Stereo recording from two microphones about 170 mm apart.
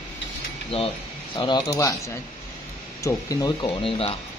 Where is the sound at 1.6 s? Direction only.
15° left (ahead or behind).